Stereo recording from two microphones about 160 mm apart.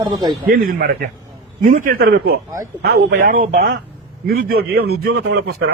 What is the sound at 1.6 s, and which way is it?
Speech, 55° right (ahead or behind).